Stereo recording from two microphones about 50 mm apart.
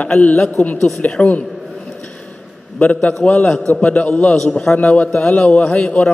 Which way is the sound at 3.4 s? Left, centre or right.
Centre.